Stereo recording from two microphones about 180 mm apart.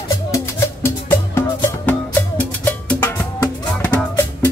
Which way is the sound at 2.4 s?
10° left (ahead or behind).